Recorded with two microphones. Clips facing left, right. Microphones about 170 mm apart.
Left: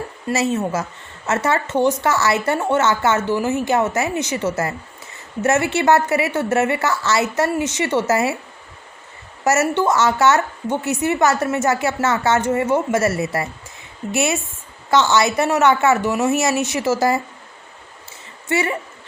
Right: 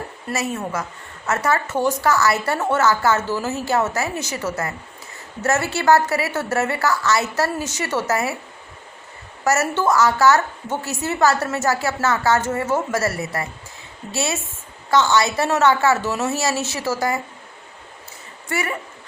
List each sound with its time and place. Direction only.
0.3 s a woman's voice: 25° left (ahead or behind)
9.4 s a woman's voice: 20° left (ahead or behind)
18.4 s a woman's voice: 25° left (ahead or behind)